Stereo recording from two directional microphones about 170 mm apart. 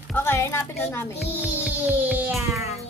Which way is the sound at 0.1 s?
15° left (ahead or behind).